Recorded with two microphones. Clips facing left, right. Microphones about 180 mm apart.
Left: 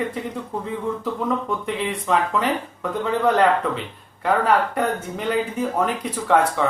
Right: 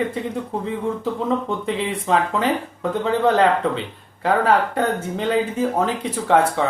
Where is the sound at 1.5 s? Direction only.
30° right (ahead or behind).